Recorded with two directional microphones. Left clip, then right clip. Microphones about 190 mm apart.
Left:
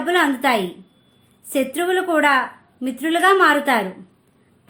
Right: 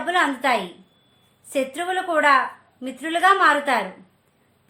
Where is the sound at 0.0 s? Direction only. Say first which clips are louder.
Left 3 dB; 30° left (ahead or behind).